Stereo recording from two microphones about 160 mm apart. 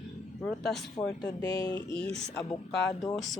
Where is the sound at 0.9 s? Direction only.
25° left (ahead or behind).